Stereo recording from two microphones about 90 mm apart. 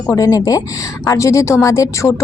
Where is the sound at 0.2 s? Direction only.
40° left (ahead or behind).